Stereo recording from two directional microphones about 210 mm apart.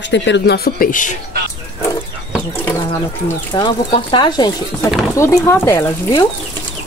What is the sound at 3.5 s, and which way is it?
Speech, 20° left (ahead or behind).